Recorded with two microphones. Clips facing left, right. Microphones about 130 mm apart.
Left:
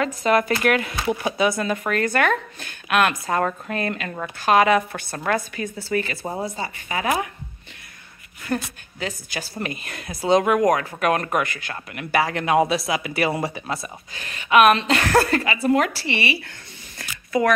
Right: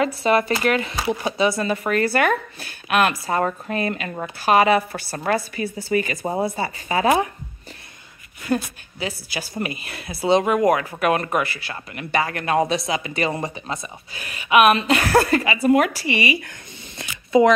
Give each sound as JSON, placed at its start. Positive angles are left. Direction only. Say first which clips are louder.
{"t": 0.2, "sound": "a woman's voice", "louder": "left 2 dB", "side_deg": -5}
{"t": 6.4, "sound": "a woman's voice", "louder": "right 4 dB", "side_deg": -30}
{"t": 8.5, "sound": "a woman's voice", "louder": "right 3 dB", "side_deg": -20}
{"t": 14.1, "sound": "a woman's voice", "louder": "even", "side_deg": -10}
{"t": 17.0, "sound": "a sound", "louder": "right 6 dB", "side_deg": -20}